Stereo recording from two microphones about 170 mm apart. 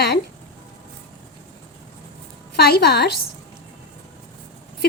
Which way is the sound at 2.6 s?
70° left (ahead or behind).